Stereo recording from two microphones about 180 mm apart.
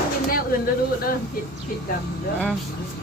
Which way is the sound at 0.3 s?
55° left (ahead or behind).